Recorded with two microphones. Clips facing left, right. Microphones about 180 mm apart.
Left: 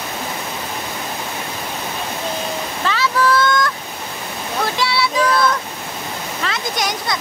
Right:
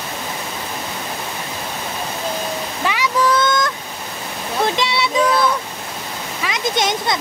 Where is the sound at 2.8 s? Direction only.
15° right (ahead or behind).